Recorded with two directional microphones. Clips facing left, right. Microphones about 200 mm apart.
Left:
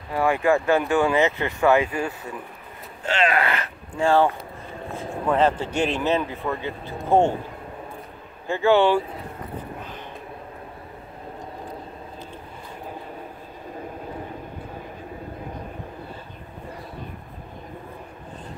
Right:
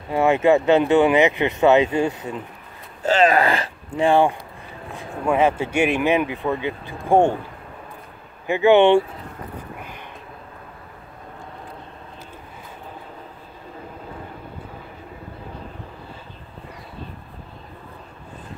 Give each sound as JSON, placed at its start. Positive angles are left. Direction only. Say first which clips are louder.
{"t": 0.1, "sound": "speech", "louder": "right 4 dB", "side_deg": -25}
{"t": 3.1, "sound": "a sound", "louder": "right 6 dB", "side_deg": -40}
{"t": 4.0, "sound": "speech", "louder": "right 2 dB", "side_deg": -15}
{"t": 8.5, "sound": "speech", "louder": "right 4 dB", "side_deg": -20}